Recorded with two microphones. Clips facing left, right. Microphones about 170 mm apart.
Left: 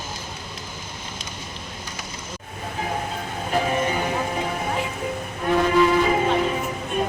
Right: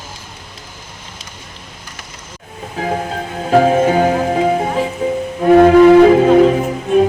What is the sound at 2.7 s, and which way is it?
Music, 85° right.